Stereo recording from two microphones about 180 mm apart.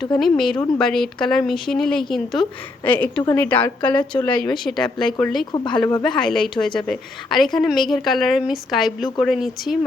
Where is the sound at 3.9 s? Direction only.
25° left (ahead or behind).